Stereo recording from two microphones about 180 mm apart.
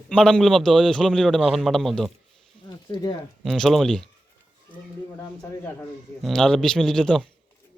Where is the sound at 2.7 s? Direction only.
25° left (ahead or behind).